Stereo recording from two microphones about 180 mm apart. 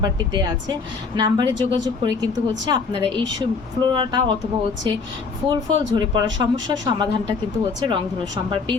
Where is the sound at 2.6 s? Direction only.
25° right (ahead or behind).